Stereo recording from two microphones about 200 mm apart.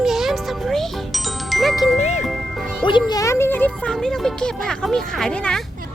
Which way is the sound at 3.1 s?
15° left (ahead or behind).